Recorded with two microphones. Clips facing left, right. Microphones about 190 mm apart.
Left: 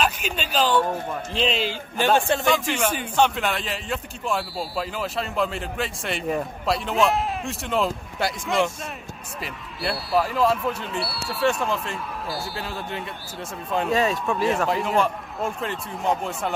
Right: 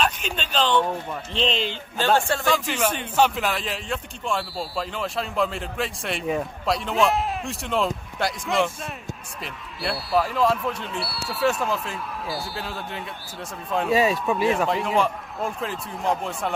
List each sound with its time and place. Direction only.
0.0 s speech: 5° left (ahead or behind)
2.0 s speech: 20° left (ahead or behind)
3.2 s speech: centre (ahead or behind)